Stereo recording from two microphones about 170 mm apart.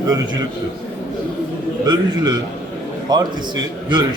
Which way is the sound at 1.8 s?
25° right (ahead or behind).